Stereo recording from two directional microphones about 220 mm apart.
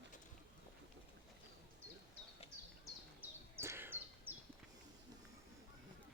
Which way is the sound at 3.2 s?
10° right (ahead or behind).